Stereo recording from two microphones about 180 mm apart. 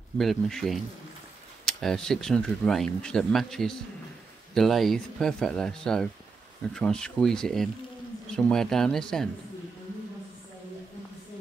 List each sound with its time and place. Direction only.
0.2 s speech: centre (ahead or behind)